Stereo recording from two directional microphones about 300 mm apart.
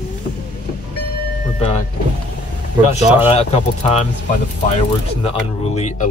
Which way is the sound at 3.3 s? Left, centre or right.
Left.